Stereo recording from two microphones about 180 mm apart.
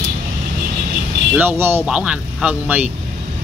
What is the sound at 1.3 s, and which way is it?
Speech, 10° right (ahead or behind).